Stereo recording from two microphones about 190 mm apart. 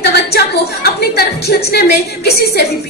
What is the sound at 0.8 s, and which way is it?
A woman's voice, 55° left (ahead or behind).